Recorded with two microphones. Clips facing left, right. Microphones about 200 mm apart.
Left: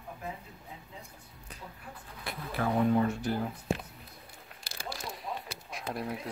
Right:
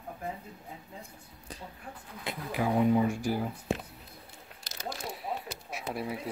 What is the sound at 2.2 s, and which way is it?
Speech, 15° right (ahead or behind).